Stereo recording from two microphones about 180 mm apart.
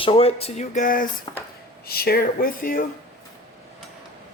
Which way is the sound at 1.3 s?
25° left (ahead or behind).